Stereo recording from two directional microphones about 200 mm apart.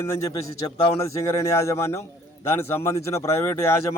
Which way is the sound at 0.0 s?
15° left (ahead or behind).